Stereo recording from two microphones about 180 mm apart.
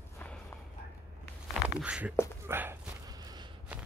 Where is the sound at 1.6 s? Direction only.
5° right (ahead or behind).